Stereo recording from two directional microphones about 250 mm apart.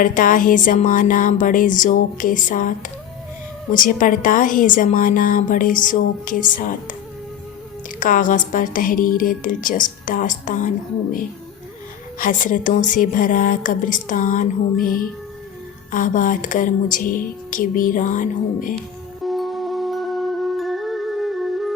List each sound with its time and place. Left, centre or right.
0.0 s a woman's voice: left
7.9 s a woman's voice: left
12.2 s a woman's voice: left
19.2 s music: centre